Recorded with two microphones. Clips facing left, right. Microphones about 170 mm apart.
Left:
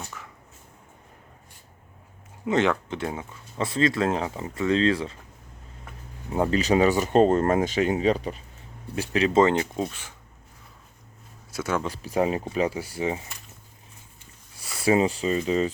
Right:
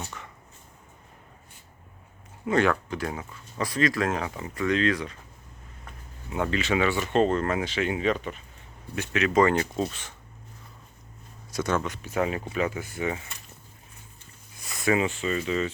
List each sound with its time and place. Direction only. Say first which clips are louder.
0.0 s a sound: right 1 dB; centre (ahead or behind)
2.5 s speech: left 1 dB; 20° left (ahead or behind)
6.3 s speech: left 4 dB; 35° left (ahead or behind); by 10.2 s 10° left (ahead or behind)
11.5 s speech: right 1 dB; 5° left (ahead or behind)
11.8 s speech: left 3 dB; 35° left (ahead or behind)
14.8 s speech: left 3 dB; 35° left (ahead or behind)